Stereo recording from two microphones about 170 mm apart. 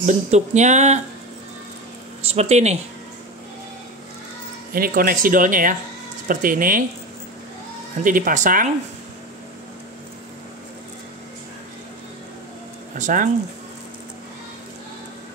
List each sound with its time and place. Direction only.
0.0 s speech: 45° right (ahead or behind)
2.2 s speech: 40° right (ahead or behind)
4.7 s speech: 60° right (ahead or behind)
8.0 s speech: 50° right (ahead or behind)
12.9 s speech: 50° right (ahead or behind)